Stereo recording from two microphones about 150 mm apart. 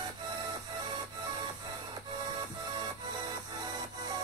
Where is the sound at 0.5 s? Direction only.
30° right (ahead or behind).